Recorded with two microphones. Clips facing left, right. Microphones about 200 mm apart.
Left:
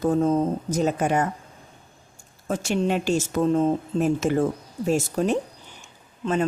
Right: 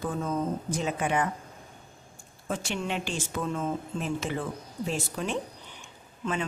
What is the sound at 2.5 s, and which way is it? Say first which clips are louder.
Speech: left 8 dB; 40° left (ahead or behind).